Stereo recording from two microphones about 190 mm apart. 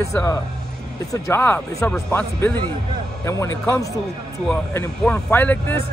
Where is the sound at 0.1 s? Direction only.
15° left (ahead or behind).